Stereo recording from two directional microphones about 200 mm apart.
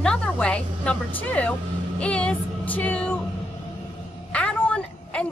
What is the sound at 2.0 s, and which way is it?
Music, 5° left (ahead or behind).